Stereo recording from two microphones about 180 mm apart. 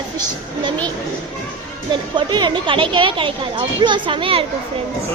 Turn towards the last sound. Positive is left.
turn(degrees=-30)  # may be behind; listen again after turning